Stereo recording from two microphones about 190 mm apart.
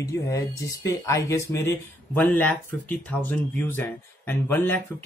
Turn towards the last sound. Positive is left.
turn(degrees=10)  # may be behind; listen again after turning